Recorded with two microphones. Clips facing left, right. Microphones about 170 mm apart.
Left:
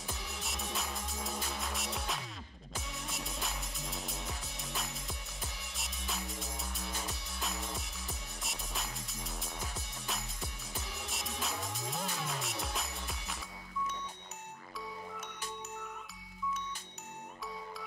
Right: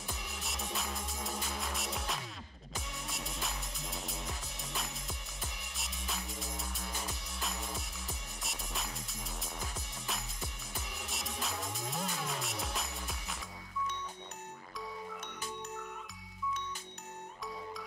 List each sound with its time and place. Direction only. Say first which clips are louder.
0.0 s music: left 1 dB; centre (ahead or behind)